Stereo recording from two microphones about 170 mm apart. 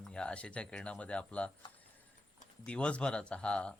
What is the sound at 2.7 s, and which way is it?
Speech, 5° left (ahead or behind).